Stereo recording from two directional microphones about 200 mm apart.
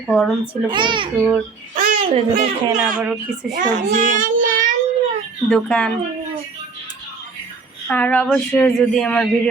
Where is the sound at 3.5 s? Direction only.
40° right (ahead or behind).